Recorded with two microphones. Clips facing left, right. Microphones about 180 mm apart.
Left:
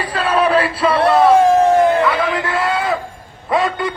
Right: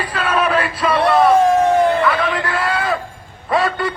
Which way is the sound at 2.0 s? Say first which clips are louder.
Left 1 dB; 25° left (ahead or behind).